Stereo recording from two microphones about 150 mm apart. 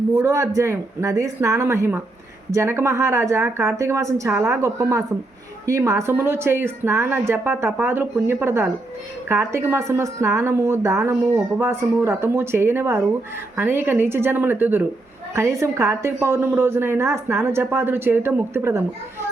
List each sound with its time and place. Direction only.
0.2 s a woman's voice: 20° right (ahead or behind)